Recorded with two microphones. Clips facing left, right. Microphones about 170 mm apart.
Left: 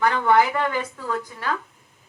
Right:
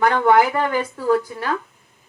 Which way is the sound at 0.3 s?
35° right (ahead or behind).